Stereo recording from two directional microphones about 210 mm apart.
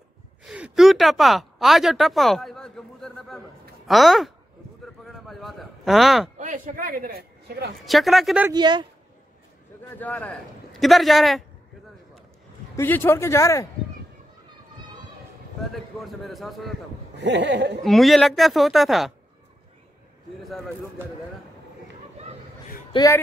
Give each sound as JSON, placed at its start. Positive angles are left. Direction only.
{"t": 0.5, "sound": "a man's voice", "side_deg": -5}
{"t": 6.3, "sound": "speech", "side_deg": -35}
{"t": 7.8, "sound": "a man's voice", "side_deg": 0}
{"t": 8.5, "sound": "speech", "side_deg": -20}
{"t": 9.9, "sound": "a man's voice", "side_deg": 5}
{"t": 12.7, "sound": "speech", "side_deg": 10}
{"t": 15.7, "sound": "a man's voice", "side_deg": 0}
{"t": 17.2, "sound": "speech", "side_deg": -55}
{"t": 17.8, "sound": "a man's voice", "side_deg": 0}
{"t": 20.4, "sound": "a man's voice", "side_deg": 0}
{"t": 22.9, "sound": "a sound", "side_deg": 25}